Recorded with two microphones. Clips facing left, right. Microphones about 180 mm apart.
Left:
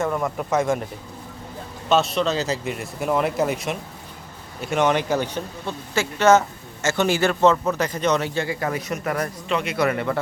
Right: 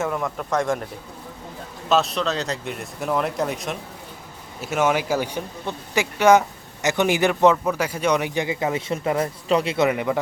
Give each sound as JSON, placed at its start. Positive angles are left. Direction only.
{"t": 0.0, "sound": "a man's voice", "side_deg": 0}
{"t": 1.9, "sound": "a man's voice", "side_deg": 0}
{"t": 9.5, "sound": "a man's voice", "side_deg": -35}
{"t": 9.7, "sound": "speech", "side_deg": -20}